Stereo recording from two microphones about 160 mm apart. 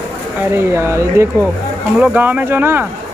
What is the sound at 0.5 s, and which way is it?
Speech, 15° right (ahead or behind).